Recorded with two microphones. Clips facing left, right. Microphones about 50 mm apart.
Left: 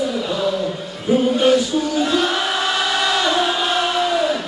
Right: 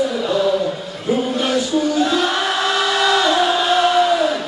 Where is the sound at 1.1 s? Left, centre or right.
Centre.